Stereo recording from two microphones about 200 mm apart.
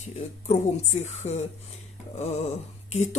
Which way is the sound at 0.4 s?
35° left (ahead or behind).